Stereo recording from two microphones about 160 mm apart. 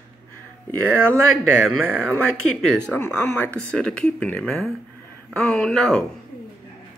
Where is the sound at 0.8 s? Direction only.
15° right (ahead or behind).